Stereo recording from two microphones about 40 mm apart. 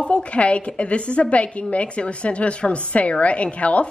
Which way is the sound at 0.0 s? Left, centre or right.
Left.